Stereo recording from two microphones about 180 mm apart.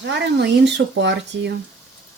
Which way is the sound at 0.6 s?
70° right (ahead or behind).